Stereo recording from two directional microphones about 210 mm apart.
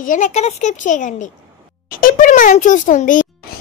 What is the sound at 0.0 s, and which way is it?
A child's voice, 35° left (ahead or behind).